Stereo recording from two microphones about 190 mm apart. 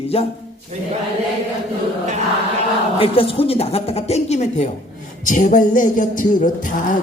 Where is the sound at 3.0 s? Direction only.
30° left (ahead or behind).